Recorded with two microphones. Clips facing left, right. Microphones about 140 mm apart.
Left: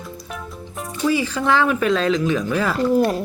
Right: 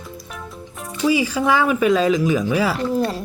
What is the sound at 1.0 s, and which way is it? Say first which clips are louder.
Speech: right 2 dB; 10° right (ahead or behind).